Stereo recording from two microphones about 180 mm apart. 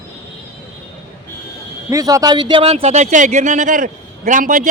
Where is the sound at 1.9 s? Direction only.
20° right (ahead or behind).